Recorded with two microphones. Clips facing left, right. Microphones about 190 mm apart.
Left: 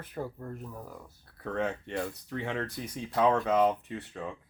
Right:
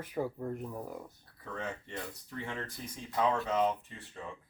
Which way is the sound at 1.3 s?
65° left (ahead or behind).